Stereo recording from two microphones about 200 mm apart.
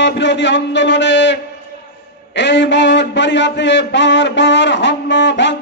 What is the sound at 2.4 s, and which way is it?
A man's voice, 60° left (ahead or behind).